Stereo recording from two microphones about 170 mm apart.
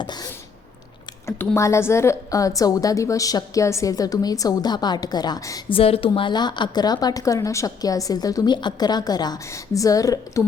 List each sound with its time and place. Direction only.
0.0 s sneeze: 25° left (ahead or behind)
1.4 s a woman's voice: 15° left (ahead or behind)